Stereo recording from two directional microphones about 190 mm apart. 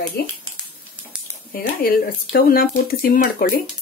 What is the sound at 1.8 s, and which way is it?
Speech, 50° left (ahead or behind).